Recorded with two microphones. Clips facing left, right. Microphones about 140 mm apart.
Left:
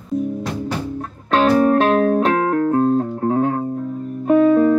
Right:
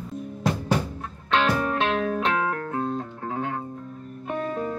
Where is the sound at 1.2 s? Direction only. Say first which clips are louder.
Left 9 dB; 40° left (ahead or behind).